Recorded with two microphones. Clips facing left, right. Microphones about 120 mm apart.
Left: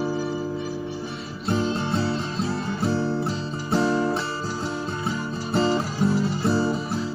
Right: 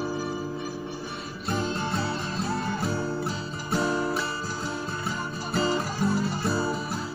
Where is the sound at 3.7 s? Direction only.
30° left (ahead or behind).